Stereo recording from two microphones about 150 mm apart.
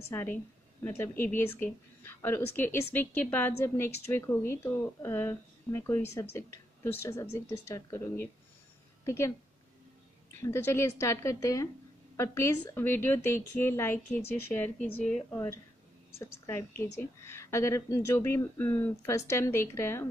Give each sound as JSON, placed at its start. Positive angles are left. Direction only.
{"t": 0.1, "sound": "a woman's voice", "side_deg": 15}
{"t": 10.4, "sound": "a woman's voice", "side_deg": 15}
{"t": 15.3, "sound": "a woman's voice", "side_deg": 15}